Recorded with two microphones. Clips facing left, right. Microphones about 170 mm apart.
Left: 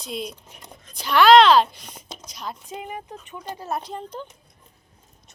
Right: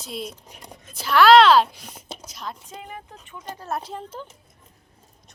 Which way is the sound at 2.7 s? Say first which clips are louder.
Left 5 dB; 15° left (ahead or behind).